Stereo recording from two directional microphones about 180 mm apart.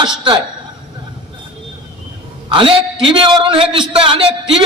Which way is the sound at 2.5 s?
30° right (ahead or behind).